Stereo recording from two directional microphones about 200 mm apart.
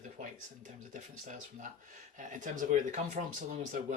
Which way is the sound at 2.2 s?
40° right (ahead or behind).